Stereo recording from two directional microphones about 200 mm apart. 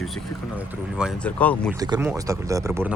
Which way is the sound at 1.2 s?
5° left (ahead or behind).